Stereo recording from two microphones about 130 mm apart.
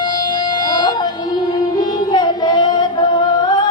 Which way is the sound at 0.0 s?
35° left (ahead or behind).